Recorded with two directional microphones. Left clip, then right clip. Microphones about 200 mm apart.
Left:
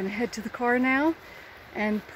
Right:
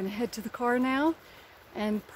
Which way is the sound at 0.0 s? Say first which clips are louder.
Left 3 dB; 15° right (ahead or behind).